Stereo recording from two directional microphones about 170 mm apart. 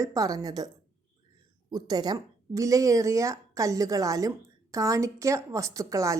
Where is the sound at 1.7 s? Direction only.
25° right (ahead or behind).